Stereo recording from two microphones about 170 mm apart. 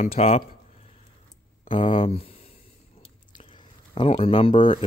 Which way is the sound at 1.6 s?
30° left (ahead or behind).